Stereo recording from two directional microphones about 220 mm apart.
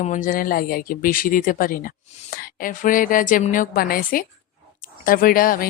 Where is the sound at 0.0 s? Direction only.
35° left (ahead or behind).